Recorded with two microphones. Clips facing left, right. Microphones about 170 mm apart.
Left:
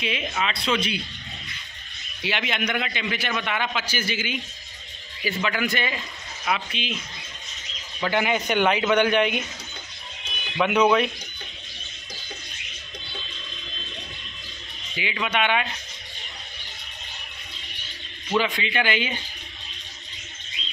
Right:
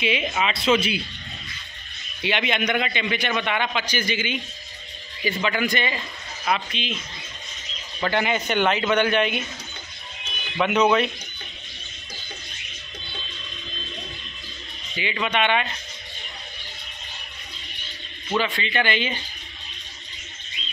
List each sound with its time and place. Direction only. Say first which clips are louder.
0.0 s a man's voice: right 3 dB; 5° right (ahead or behind)
2.2 s a man's voice: right 3 dB; 5° left (ahead or behind)
8.0 s speech: even; 5° left (ahead or behind)
10.6 s speech: even; 10° left (ahead or behind)
15.0 s speech: right 1 dB; 5° left (ahead or behind)
18.3 s speech: even; 5° left (ahead or behind)